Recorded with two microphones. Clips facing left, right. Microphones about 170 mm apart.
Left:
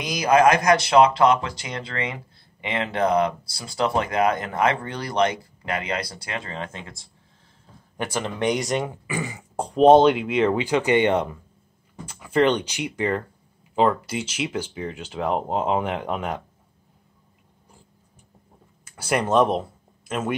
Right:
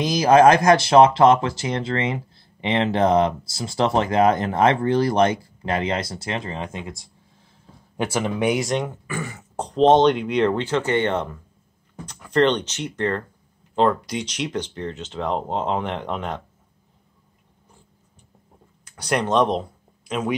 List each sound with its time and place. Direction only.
0.0 s speech: 25° right (ahead or behind); by 8.9 s centre (ahead or behind)
9.0 s speech: 15° left (ahead or behind)
18.9 s speech: 5° left (ahead or behind)